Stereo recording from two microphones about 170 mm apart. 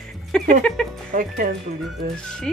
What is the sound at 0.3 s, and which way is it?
Music, 5° left (ahead or behind).